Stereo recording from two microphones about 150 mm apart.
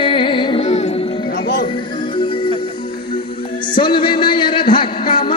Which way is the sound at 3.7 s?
30° left (ahead or behind).